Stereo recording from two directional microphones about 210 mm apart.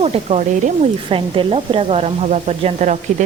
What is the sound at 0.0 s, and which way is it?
Speech, 30° right (ahead or behind).